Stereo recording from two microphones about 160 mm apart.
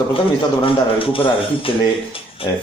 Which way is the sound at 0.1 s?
35° left (ahead or behind).